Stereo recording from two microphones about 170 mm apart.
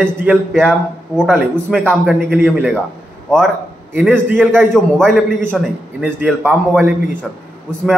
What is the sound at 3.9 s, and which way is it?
Speech, 10° right (ahead or behind).